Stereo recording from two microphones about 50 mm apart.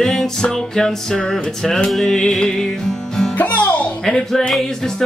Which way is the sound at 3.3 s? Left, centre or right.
Left.